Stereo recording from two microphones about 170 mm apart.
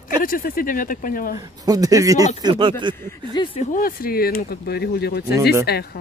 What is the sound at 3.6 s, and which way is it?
A woman's voice, 55° left (ahead or behind).